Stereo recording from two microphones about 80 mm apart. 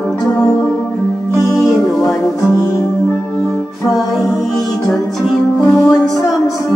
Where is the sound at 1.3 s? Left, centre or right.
Centre.